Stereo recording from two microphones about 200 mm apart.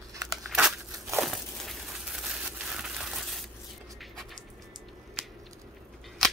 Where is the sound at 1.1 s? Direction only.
Centre (ahead or behind).